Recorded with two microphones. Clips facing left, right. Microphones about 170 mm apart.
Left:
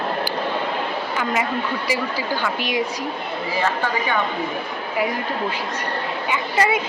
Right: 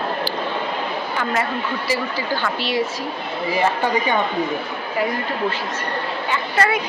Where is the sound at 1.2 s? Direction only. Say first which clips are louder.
Even; 10° left (ahead or behind).